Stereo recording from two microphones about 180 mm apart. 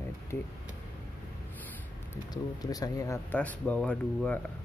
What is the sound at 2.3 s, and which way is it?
Speech, 20° left (ahead or behind).